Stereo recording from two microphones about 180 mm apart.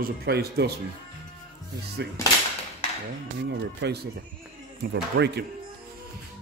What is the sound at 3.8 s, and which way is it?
Speech, 80° right.